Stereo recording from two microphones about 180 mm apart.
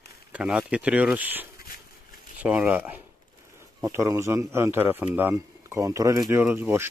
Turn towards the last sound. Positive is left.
turn(degrees=-15)  # may be behind; listen again after turning